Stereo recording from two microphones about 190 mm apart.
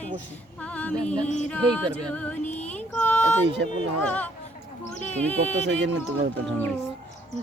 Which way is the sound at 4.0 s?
5° left (ahead or behind).